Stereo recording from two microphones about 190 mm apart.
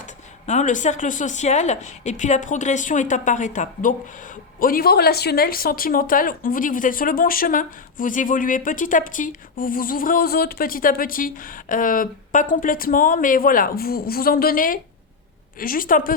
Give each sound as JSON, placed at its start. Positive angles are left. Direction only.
{"t": 0.4, "sound": "a woman's voice", "side_deg": 40}